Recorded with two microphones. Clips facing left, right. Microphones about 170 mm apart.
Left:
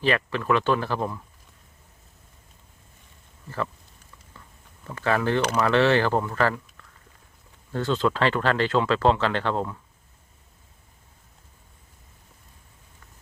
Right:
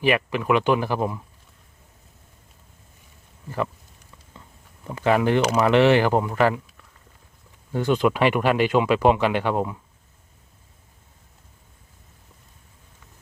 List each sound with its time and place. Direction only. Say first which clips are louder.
0.0 s speech: right 3 dB; 15° right (ahead or behind)
4.4 s a sound: right 3 dB; 20° right (ahead or behind)
5.5 s speech: right 3 dB; 20° right (ahead or behind)